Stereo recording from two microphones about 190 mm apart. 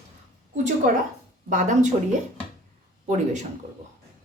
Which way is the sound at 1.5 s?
40° right (ahead or behind).